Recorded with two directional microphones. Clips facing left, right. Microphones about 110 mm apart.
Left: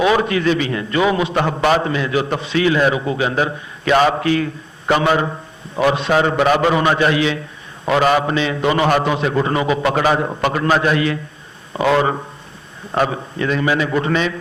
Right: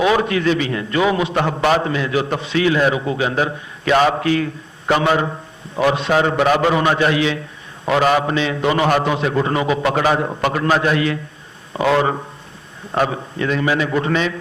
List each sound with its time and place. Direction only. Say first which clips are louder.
0.0 s a man's voice: left 1 dB; 25° left (ahead or behind)